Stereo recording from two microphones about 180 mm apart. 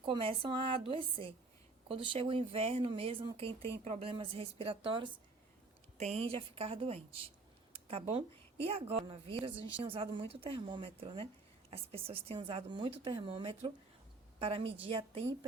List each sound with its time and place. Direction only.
0.0 s a woman's voice: 30° right (ahead or behind)